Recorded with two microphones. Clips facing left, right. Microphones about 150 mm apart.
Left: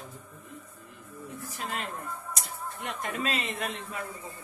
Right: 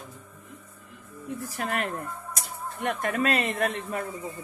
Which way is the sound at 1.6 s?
70° right (ahead or behind).